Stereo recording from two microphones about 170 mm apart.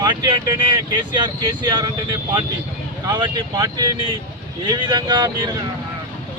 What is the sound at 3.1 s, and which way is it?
Speech, 25° right (ahead or behind).